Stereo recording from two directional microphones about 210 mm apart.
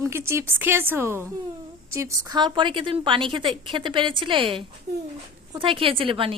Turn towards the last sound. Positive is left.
turn(degrees=-25)  # may be behind; listen again after turning